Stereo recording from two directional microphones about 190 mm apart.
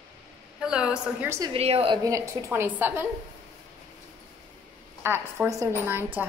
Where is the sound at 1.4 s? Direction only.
30° right (ahead or behind).